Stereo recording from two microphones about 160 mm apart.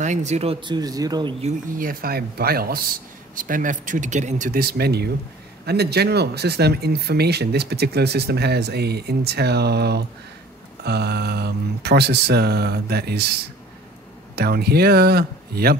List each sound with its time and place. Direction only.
0.0 s speech: 45° right (ahead or behind); by 1.3 s 25° right (ahead or behind)
1.4 s speech: 60° right (ahead or behind)
3.3 s speech: 55° right (ahead or behind); by 15.7 s 75° right (ahead or behind)